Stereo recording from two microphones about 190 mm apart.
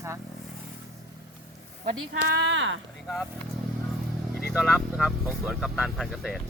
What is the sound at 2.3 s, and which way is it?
Speech, 70° right (ahead or behind).